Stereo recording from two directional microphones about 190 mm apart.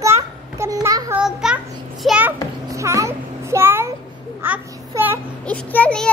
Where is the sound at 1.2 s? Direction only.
5° right (ahead or behind).